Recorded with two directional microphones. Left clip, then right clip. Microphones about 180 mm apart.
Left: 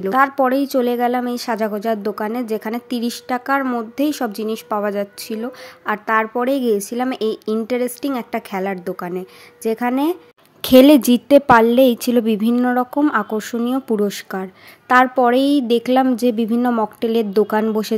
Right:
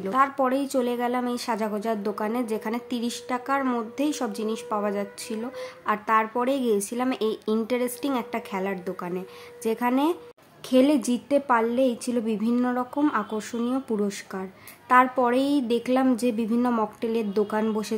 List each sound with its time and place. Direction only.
0.0 s a woman's voice: 30° left (ahead or behind)
3.6 s speech: 20° left (ahead or behind)
10.6 s a woman's voice: 55° left (ahead or behind); by 17.9 s 35° left (ahead or behind)